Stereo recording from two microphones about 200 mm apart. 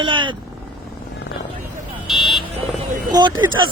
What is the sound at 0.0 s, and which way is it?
Vehicle, 25° right (ahead or behind).